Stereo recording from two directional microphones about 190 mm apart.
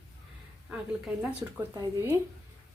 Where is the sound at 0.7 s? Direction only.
5° right (ahead or behind).